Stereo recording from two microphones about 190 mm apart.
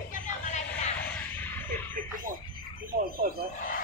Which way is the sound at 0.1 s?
40° left (ahead or behind).